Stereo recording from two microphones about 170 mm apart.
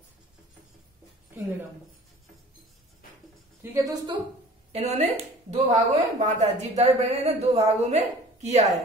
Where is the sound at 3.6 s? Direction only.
20° right (ahead or behind).